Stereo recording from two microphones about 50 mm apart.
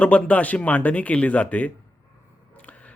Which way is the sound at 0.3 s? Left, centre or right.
Left.